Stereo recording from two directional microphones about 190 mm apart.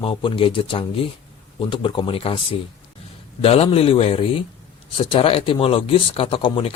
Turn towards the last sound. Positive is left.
turn(degrees=25)  # may be behind; listen again after turning